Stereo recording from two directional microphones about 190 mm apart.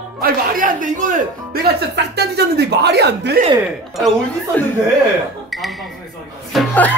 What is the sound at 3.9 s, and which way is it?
Speech, centre (ahead or behind).